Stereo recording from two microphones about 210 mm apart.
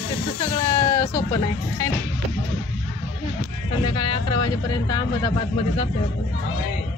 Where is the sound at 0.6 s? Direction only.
15° left (ahead or behind).